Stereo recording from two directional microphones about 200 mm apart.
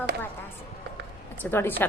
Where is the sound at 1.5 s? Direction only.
10° left (ahead or behind).